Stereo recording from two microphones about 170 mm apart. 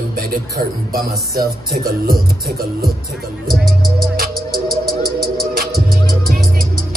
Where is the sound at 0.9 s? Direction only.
60° right (ahead or behind).